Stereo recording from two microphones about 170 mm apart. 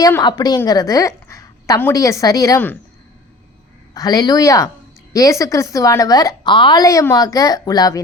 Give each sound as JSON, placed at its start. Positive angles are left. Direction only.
{"t": 0.0, "sound": "a woman's voice", "side_deg": 25}
{"t": 3.9, "sound": "a woman's voice", "side_deg": 20}